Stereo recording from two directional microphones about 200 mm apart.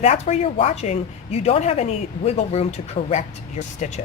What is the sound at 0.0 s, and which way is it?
Speech, 30° left (ahead or behind).